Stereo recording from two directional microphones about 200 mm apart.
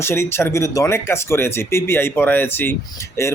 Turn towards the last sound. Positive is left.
turn(degrees=15)  # may be behind; listen again after turning